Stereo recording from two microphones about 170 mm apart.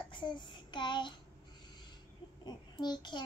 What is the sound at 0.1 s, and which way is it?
Child singing, 30° left (ahead or behind).